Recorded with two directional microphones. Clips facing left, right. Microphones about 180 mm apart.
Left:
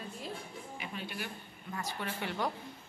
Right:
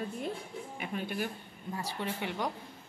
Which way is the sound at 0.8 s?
50° right (ahead or behind).